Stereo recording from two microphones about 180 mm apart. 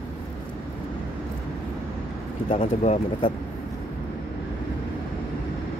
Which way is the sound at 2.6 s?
40° left (ahead or behind).